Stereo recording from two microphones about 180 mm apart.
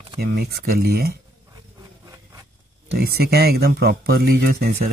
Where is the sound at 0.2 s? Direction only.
60° right (ahead or behind).